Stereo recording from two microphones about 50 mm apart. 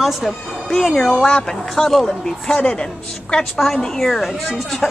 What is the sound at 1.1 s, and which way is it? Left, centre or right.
Speech, centre.